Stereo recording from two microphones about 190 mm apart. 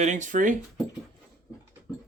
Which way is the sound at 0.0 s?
40° right (ahead or behind).